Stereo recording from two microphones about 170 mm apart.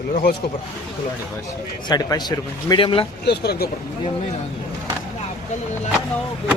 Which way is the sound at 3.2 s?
75° left (ahead or behind).